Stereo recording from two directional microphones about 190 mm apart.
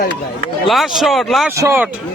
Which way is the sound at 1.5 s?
15° right (ahead or behind).